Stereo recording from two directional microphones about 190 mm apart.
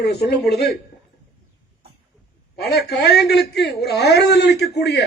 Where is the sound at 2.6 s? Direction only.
55° left (ahead or behind).